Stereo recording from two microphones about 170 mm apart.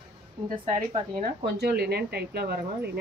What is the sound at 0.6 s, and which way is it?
Speech, 30° right (ahead or behind).